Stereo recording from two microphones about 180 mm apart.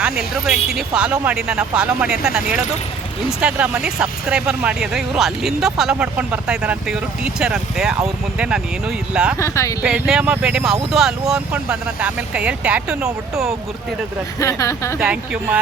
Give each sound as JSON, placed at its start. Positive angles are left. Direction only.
{"t": 0.0, "sound": "speech", "side_deg": -5}
{"t": 9.4, "sound": "speech", "side_deg": 15}
{"t": 9.8, "sound": "speech", "side_deg": -5}
{"t": 14.3, "sound": "speech", "side_deg": 15}
{"t": 14.9, "sound": "speech", "side_deg": -5}